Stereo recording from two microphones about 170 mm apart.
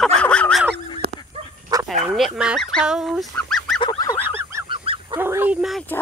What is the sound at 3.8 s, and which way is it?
Goose, 25° left (ahead or behind).